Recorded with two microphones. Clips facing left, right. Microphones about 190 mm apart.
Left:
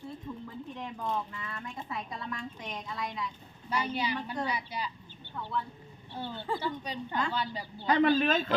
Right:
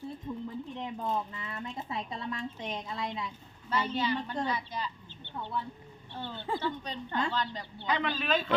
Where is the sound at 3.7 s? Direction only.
10° left (ahead or behind).